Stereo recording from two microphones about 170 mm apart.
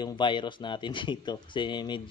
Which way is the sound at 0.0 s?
30° left (ahead or behind).